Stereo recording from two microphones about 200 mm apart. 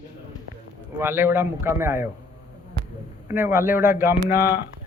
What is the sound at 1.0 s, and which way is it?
Speech, 10° right (ahead or behind).